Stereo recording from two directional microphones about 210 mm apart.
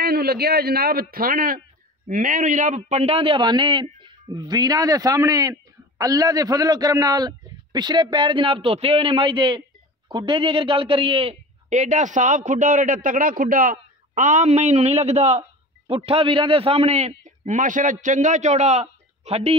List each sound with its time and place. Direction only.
0.0 s a man's voice: 45° right (ahead or behind); by 19.5 s 30° right (ahead or behind)